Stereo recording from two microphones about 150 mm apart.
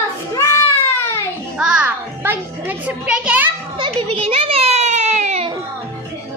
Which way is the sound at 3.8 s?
40° right (ahead or behind).